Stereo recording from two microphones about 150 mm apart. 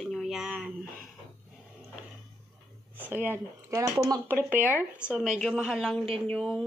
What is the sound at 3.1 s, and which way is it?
Speech, 10° right (ahead or behind).